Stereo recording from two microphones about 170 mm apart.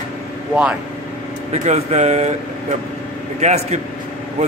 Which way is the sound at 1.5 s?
40° right (ahead or behind).